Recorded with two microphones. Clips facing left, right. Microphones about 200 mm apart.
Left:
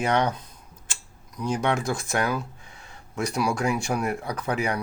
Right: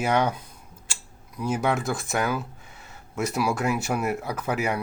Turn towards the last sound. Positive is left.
turn(degrees=-5)  # may be behind; listen again after turning